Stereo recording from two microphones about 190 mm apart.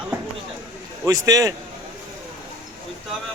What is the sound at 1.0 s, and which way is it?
Speech, 20° right (ahead or behind).